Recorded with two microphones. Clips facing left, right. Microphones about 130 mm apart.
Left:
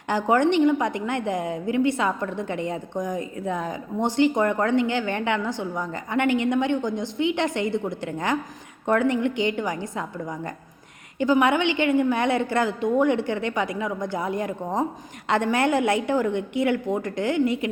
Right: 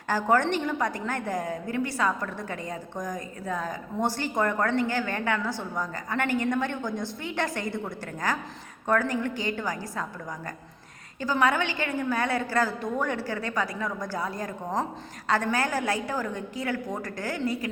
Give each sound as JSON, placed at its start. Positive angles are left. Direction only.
{"t": 0.1, "sound": "a woman's voice", "side_deg": 20}